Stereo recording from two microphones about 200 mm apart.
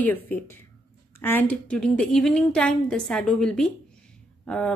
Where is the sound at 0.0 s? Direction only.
10° left (ahead or behind).